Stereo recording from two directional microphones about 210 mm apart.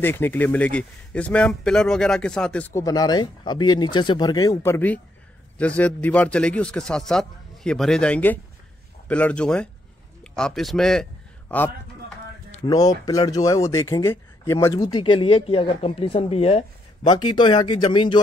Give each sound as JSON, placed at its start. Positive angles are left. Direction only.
{"t": 0.0, "sound": "a man's voice", "side_deg": 10}